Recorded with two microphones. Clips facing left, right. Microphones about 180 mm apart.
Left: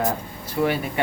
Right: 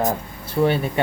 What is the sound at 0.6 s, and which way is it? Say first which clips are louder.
Speech: right 3 dB; 30° right (ahead or behind).